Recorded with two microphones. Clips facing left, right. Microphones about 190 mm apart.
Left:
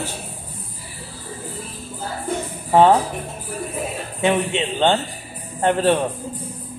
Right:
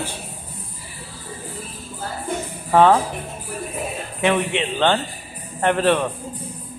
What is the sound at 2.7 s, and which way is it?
Speech, 20° left (ahead or behind).